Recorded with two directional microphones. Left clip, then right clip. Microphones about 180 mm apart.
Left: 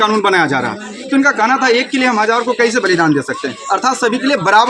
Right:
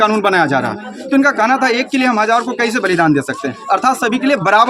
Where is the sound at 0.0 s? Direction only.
30° right (ahead or behind).